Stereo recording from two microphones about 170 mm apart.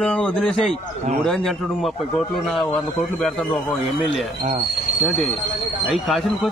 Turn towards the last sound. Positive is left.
turn(degrees=0)  # may be behind; listen again after turning